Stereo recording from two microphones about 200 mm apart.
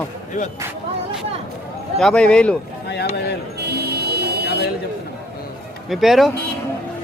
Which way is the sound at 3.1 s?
50° left (ahead or behind).